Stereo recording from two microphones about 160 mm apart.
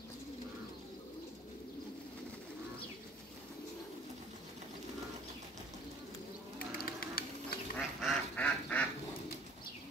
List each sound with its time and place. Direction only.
6.8 s printer: 70° left (ahead or behind)
7.7 s duck: 5° left (ahead or behind)